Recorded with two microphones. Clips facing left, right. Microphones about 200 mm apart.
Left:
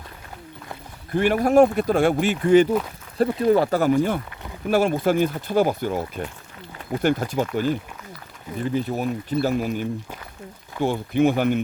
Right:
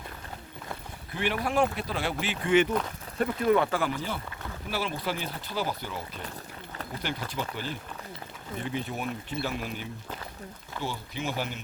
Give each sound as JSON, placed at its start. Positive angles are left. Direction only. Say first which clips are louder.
{"t": 1.1, "sound": "speech", "louder": "left 11 dB", "side_deg": 45}